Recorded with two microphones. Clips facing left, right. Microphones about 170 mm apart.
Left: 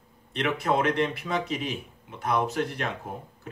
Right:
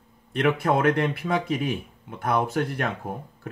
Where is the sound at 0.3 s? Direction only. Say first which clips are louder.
Right 4 dB; 55° right (ahead or behind).